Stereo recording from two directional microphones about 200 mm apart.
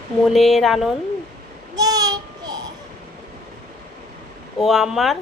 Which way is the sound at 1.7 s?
20° right (ahead or behind).